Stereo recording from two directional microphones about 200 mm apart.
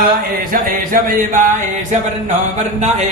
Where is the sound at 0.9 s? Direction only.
45° right (ahead or behind).